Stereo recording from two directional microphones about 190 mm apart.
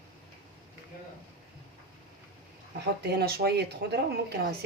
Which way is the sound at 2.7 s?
60° right (ahead or behind).